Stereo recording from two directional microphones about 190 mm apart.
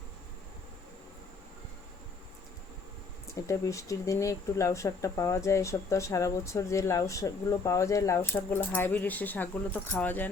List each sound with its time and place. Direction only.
3.4 s speech: 15° left (ahead or behind)